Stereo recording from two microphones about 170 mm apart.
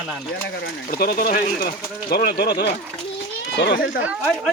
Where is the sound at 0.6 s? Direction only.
60° left (ahead or behind).